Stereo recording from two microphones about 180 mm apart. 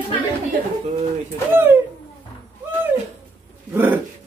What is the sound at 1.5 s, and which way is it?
Speech, 10° right (ahead or behind).